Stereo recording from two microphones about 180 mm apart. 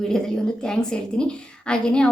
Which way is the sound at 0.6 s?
5° left (ahead or behind).